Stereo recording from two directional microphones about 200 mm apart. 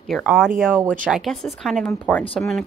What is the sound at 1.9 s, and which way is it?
Speech, 10° left (ahead or behind).